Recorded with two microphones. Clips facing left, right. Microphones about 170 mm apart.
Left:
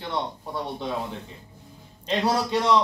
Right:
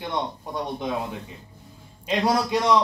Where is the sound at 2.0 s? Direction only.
15° right (ahead or behind).